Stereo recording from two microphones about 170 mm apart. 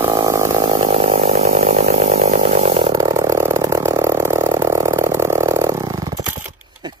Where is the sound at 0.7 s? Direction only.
35° right (ahead or behind).